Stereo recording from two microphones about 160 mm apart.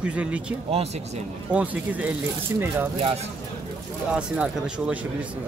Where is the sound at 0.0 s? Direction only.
10° right (ahead or behind).